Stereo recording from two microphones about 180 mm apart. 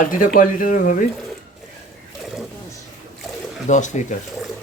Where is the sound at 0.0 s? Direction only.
50° left (ahead or behind).